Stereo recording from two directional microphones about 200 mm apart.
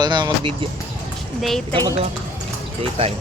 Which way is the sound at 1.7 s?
25° right (ahead or behind).